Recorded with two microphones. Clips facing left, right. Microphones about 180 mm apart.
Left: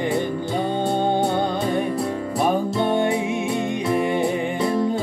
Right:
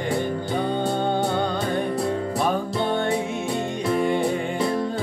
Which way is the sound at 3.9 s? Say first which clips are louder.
Even; 20° left (ahead or behind).